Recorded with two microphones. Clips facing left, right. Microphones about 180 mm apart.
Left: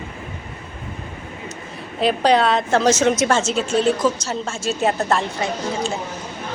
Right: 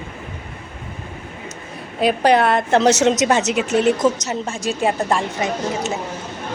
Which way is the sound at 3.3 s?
15° right (ahead or behind).